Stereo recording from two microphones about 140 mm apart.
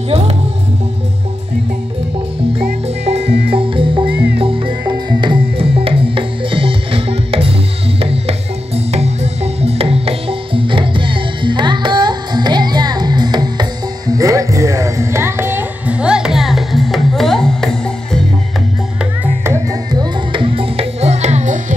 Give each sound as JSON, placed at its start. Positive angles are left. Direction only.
{"t": 3.1, "sound": "music", "side_deg": -45}
{"t": 19.4, "sound": "music", "side_deg": -25}